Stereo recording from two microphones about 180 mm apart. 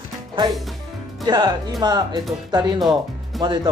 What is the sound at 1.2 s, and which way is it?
Speech, 20° right (ahead or behind).